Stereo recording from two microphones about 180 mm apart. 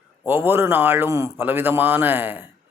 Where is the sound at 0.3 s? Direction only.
15° right (ahead or behind).